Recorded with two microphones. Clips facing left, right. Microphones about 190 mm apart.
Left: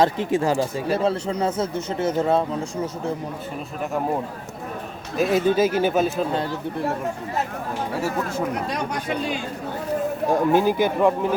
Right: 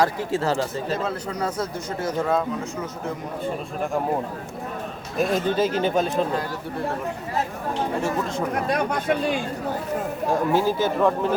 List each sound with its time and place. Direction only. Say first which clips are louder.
0.0 s speech: left 3 dB; 20° left (ahead or behind)
0.9 s a man's voice: left 5 dB; 30° left (ahead or behind)
5.1 s speech: left 3 dB; 5° left (ahead or behind)
8.0 s speech: even; 5° left (ahead or behind)
8.6 s speech: right 4 dB; 55° right (ahead or behind)
10.5 s speech: left 2 dB; 15° left (ahead or behind)